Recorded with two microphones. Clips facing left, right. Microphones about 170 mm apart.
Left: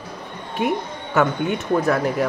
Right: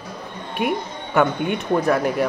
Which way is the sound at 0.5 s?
15° right (ahead or behind).